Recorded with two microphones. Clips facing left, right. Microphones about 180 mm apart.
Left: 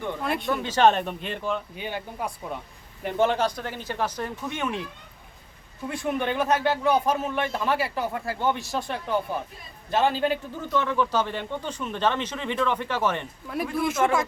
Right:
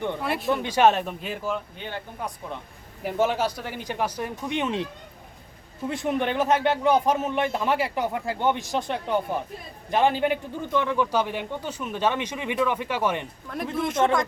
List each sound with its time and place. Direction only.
0.2 s speech: centre (ahead or behind)
0.5 s speech: 15° right (ahead or behind)
1.7 s speech: 10° left (ahead or behind)
3.0 s a man's voice: 5° right (ahead or behind); by 4.9 s 20° right (ahead or behind)
5.9 s a man's voice: 20° right (ahead or behind)
13.5 s speech: 5° left (ahead or behind)